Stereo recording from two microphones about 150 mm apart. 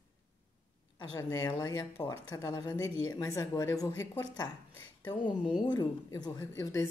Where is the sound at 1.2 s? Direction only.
20° left (ahead or behind).